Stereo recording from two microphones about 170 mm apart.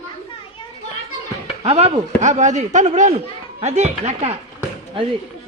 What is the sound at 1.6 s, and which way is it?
Speech, 35° right (ahead or behind).